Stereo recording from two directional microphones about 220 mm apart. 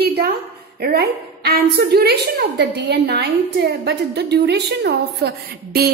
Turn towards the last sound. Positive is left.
turn(degrees=-45)  # may be behind; listen again after turning